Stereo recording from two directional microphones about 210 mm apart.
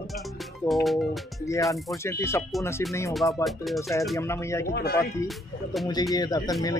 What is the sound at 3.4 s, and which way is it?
Speech, centre (ahead or behind).